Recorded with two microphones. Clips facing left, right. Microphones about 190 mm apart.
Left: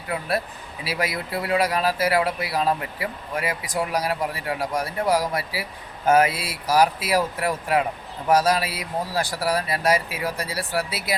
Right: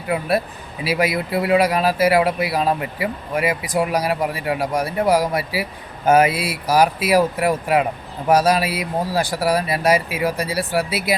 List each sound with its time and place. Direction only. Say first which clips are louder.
0.1 s speech: right 6 dB; 15° right (ahead or behind)